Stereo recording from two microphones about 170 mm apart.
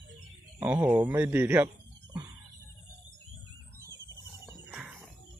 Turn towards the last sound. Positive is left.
turn(degrees=-5)  # may be behind; listen again after turning